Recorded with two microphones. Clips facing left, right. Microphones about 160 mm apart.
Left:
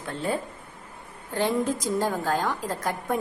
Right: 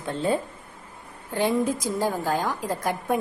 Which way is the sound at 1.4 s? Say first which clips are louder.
Right 2 dB; 15° right (ahead or behind).